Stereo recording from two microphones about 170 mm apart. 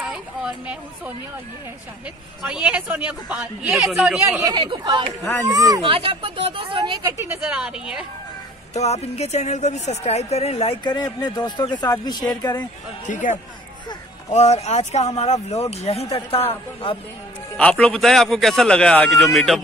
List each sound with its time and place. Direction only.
0.0 s speech: 5° right (ahead or behind)
2.4 s a man's voice: 5° right (ahead or behind)
4.4 s speech: 25° right (ahead or behind)
5.8 s speech: 35° right (ahead or behind); by 8.1 s 5° right (ahead or behind)
8.7 s a woman's voice: 40° left (ahead or behind); by 12.6 s 25° left (ahead or behind)
13.0 s a man's voice: 45° left (ahead or behind); by 17.0 s 30° left (ahead or behind)
17.6 s a man's voice: 5° left (ahead or behind)